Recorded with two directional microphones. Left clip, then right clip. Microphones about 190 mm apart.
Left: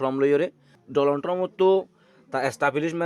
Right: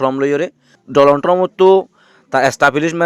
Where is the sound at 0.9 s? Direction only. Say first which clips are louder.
Right 12 dB; 45° right (ahead or behind).